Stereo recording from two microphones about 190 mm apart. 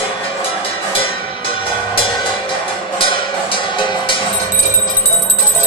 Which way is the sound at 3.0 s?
25° left (ahead or behind).